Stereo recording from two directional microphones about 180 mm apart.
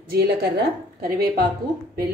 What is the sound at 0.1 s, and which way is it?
A woman's voice, 60° right (ahead or behind).